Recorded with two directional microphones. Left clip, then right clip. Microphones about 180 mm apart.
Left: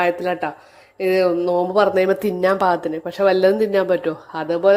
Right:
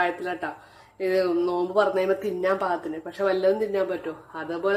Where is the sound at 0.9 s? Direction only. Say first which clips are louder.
Left 6 dB; 35° left (ahead or behind).